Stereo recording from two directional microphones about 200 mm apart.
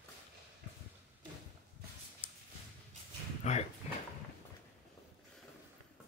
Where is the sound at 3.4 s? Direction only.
35° left (ahead or behind).